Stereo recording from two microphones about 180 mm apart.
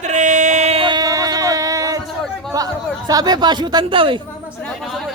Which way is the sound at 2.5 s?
20° right (ahead or behind).